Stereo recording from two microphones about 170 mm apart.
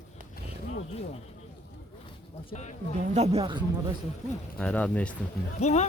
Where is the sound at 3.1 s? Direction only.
40° right (ahead or behind).